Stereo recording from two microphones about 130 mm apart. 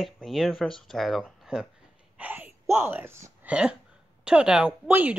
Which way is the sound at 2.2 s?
15° right (ahead or behind).